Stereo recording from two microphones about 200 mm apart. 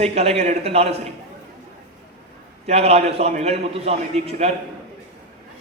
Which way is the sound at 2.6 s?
30° right (ahead or behind).